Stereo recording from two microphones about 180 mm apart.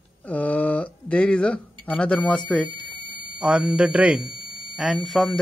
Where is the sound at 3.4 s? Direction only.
5° right (ahead or behind).